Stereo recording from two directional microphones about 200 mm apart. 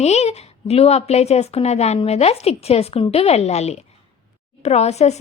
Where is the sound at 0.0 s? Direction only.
30° left (ahead or behind).